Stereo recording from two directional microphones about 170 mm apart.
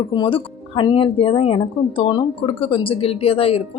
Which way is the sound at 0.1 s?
30° left (ahead or behind).